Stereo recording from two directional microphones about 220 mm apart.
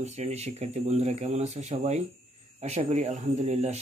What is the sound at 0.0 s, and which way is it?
Speech, 30° right (ahead or behind).